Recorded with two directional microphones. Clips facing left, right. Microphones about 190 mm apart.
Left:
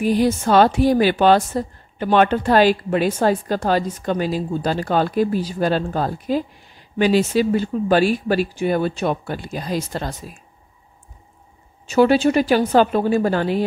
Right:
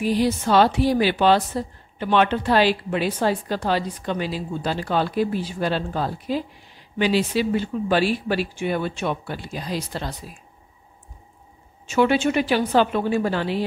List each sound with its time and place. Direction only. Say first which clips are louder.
0.0 s a woman's voice: left 3 dB; 50° left (ahead or behind)
11.9 s a woman's voice: left 4 dB; 40° left (ahead or behind)